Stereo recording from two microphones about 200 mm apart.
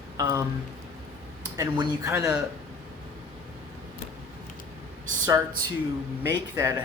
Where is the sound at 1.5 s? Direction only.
20° right (ahead or behind).